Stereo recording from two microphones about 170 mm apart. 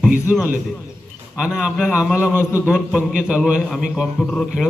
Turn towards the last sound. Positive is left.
turn(degrees=0)  # may be behind; listen again after turning